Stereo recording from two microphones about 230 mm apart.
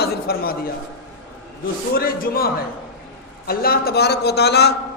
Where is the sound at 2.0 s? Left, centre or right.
Left.